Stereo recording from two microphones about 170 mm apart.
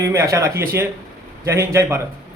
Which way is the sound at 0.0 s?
20° right (ahead or behind).